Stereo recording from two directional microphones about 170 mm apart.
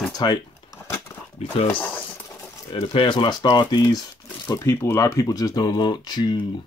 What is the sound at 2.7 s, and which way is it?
Speech, 30° left (ahead or behind).